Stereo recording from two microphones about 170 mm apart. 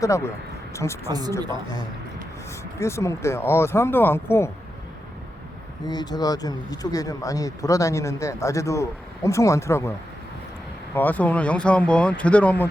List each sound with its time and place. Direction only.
0.7 s a woman's voice: 15° left (ahead or behind)
1.0 s speech: 25° right (ahead or behind)
2.7 s speech: 15° left (ahead or behind)
5.8 s speech: 25° left (ahead or behind)
10.9 s speech: 10° left (ahead or behind)